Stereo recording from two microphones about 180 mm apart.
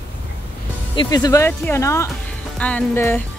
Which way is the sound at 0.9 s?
25° left (ahead or behind).